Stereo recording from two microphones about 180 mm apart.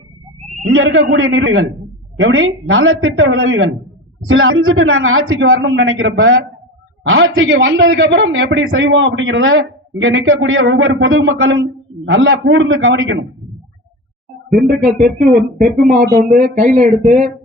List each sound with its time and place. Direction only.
0.7 s a man's voice: 90° right
14.7 s speech: 50° right (ahead or behind)